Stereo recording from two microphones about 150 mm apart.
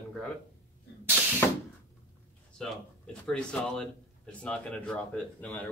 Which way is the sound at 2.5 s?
5° left (ahead or behind).